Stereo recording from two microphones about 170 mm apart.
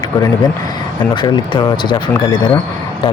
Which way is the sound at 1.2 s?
30° left (ahead or behind).